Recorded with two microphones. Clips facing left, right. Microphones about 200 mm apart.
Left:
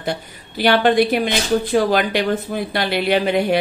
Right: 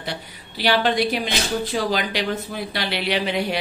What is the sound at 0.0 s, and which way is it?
Speech, 50° left (ahead or behind).